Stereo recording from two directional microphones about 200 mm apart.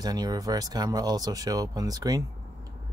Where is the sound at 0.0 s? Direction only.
20° right (ahead or behind).